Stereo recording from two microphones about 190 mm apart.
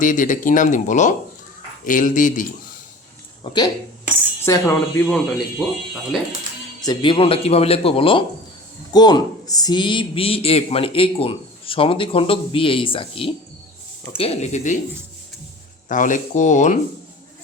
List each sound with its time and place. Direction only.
0.0 s speech: 45° left (ahead or behind)
3.4 s speech: 25° left (ahead or behind)
5.0 s speech: centre (ahead or behind)
6.8 s speech: 25° left (ahead or behind)
15.9 s speech: 40° left (ahead or behind)